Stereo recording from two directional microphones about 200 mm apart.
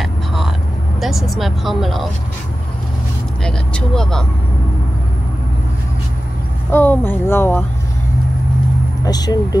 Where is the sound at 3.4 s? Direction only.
5° left (ahead or behind).